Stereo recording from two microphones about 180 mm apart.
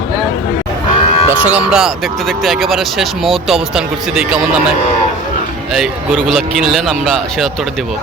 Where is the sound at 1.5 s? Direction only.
5° right (ahead or behind).